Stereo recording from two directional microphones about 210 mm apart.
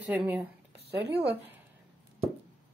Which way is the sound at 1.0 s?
55° right (ahead or behind).